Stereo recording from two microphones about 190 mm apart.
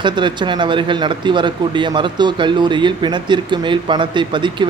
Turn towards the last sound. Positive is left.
turn(degrees=-25)  # may be behind; listen again after turning